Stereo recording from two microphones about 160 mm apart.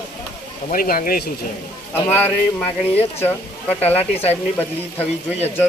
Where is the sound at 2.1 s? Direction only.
10° left (ahead or behind).